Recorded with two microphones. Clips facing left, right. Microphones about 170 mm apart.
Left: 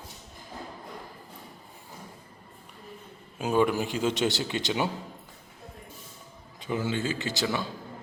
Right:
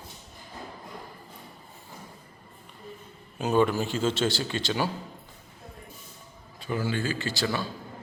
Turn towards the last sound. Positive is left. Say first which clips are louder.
# even
turn(degrees=20)  # may be behind; listen again after turning